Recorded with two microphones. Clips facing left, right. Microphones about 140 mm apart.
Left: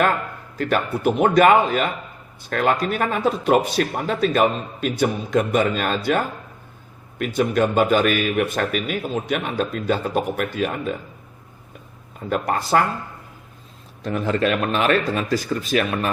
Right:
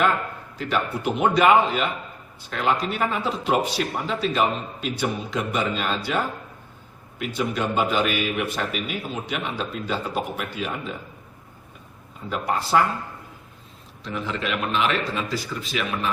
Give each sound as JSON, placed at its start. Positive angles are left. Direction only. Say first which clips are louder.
{"t": 0.6, "sound": "a man's voice", "louder": "left 5 dB", "side_deg": 50}
{"t": 7.2, "sound": "a man's voice", "louder": "left 6 dB", "side_deg": 50}
{"t": 12.3, "sound": "a man's voice", "louder": "left 2 dB", "side_deg": 50}
{"t": 14.0, "sound": "a man's voice", "louder": "left 8 dB", "side_deg": 50}